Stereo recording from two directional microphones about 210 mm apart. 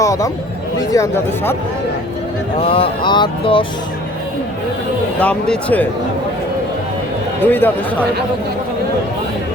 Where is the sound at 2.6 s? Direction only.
25° left (ahead or behind).